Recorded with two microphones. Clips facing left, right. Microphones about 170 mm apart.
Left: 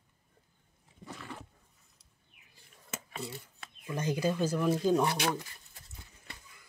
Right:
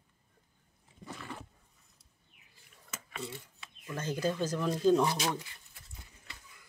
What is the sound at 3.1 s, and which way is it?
Speech, 40° left (ahead or behind).